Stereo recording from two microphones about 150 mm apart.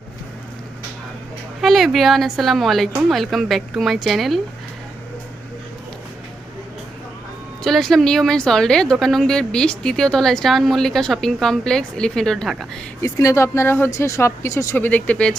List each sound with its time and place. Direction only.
1.6 s speech: centre (ahead or behind)
7.6 s speech: centre (ahead or behind)
13.0 s speech: 20° left (ahead or behind)